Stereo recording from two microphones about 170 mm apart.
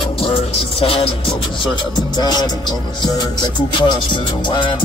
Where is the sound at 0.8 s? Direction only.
30° left (ahead or behind).